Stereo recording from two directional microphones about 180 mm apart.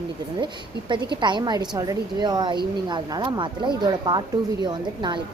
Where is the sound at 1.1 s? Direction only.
25° right (ahead or behind).